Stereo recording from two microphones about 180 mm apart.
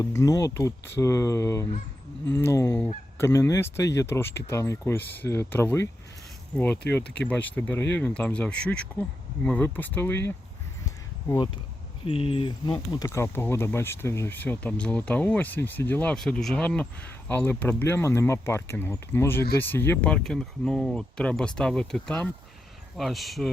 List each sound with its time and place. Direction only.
0.0 s speech: 15° left (ahead or behind)
7.0 s speech: 75° left (ahead or behind)
7.3 s speech: 10° left (ahead or behind)
10.8 s a sound: 20° left (ahead or behind)
12.0 s speech: 30° left (ahead or behind); by 23.5 s centre (ahead or behind)